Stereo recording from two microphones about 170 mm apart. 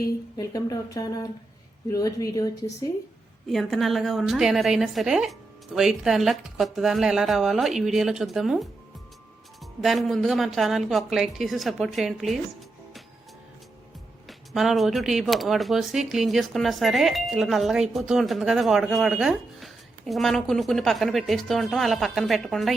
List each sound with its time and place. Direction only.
0.3 s a woman's voice: 20° left (ahead or behind)
3.5 s speech: centre (ahead or behind)
9.8 s speech: centre (ahead or behind)
14.3 s speech: centre (ahead or behind)